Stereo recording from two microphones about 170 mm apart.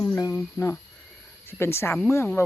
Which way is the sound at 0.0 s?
20° left (ahead or behind).